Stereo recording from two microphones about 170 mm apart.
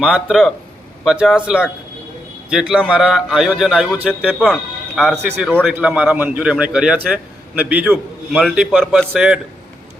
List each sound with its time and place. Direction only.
0.0 s speech: 5° right (ahead or behind)
5.6 s a man's voice: 10° right (ahead or behind)